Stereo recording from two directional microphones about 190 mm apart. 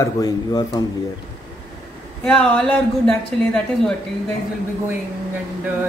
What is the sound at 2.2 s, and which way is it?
Speech, centre (ahead or behind).